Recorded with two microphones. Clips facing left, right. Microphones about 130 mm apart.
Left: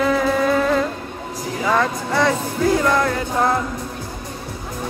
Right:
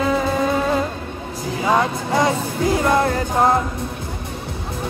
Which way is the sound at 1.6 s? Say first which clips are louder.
Right 1 dB; 20° right (ahead or behind).